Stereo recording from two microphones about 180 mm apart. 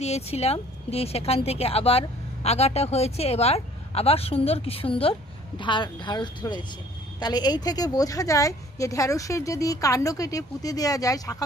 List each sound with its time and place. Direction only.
0.0 s a woman's voice: 35° left (ahead or behind); by 11.4 s 20° left (ahead or behind)